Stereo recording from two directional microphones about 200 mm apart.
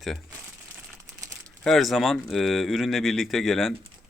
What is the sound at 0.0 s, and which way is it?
Speech, centre (ahead or behind).